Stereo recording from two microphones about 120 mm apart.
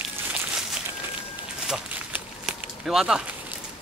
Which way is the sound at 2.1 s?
5° right (ahead or behind).